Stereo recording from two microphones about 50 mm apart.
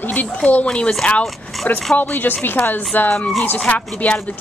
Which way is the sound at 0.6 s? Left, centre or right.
Left.